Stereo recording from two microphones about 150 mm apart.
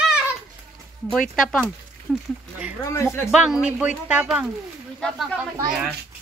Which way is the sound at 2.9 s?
20° left (ahead or behind).